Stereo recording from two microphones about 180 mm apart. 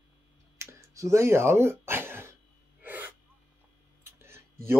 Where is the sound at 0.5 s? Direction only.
15° right (ahead or behind).